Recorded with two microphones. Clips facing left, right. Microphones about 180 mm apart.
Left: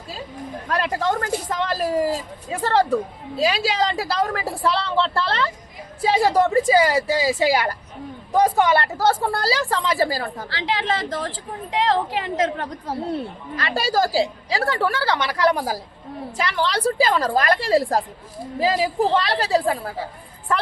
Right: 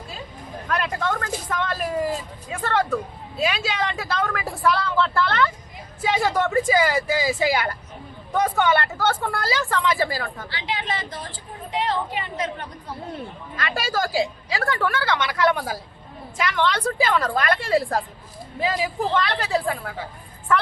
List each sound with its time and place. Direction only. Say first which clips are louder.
0.7 s speech: left 3 dB; 35° left (ahead or behind)
10.5 s a woman's voice: left 6 dB; 90° left
13.6 s speech: left 4 dB; 35° left (ahead or behind)